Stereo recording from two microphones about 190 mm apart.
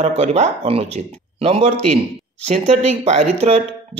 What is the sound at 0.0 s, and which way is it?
Speech, 35° right (ahead or behind).